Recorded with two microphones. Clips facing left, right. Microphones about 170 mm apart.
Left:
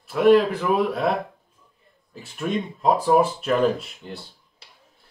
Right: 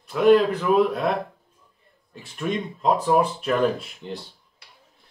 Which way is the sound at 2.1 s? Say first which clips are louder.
Left 1 dB; centre (ahead or behind).